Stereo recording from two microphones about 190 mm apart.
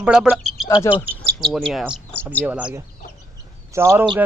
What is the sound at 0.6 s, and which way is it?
Speech, 20° left (ahead or behind).